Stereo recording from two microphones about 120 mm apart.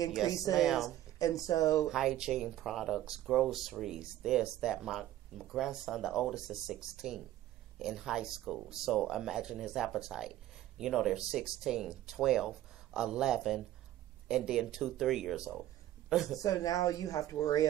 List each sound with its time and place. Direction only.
0.2 s speech: centre (ahead or behind)
1.2 s speech: 30° left (ahead or behind)
1.9 s speech: 5° right (ahead or behind)
16.3 s speech: 30° left (ahead or behind)